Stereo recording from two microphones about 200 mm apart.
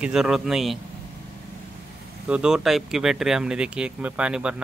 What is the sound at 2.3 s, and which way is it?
Speech, 5° right (ahead or behind).